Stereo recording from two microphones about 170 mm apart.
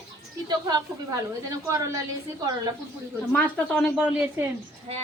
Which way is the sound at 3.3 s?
5° left (ahead or behind).